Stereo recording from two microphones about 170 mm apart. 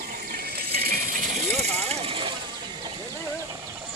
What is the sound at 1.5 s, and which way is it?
Speech, 40° right (ahead or behind).